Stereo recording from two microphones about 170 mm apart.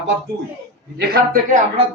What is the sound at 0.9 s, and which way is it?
Speech, 70° right (ahead or behind).